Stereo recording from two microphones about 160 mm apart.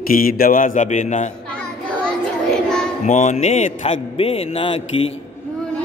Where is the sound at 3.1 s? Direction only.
50° left (ahead or behind).